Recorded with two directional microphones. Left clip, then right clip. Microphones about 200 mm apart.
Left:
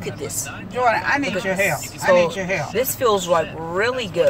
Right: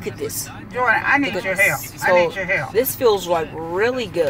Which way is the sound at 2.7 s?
25° right (ahead or behind).